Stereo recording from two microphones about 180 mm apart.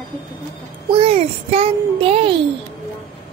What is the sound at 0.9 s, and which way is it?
A child's voice, 30° right (ahead or behind).